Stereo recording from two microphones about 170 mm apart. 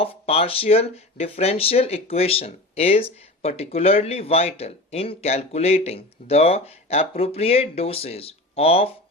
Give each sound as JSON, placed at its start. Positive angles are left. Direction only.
{"t": 0.0, "sound": "speech", "side_deg": 35}